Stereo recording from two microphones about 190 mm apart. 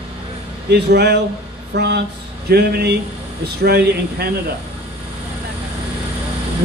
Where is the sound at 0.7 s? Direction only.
60° right (ahead or behind).